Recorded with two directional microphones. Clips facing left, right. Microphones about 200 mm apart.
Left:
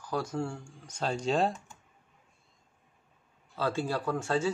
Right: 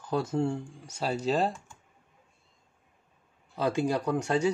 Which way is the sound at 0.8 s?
10° right (ahead or behind).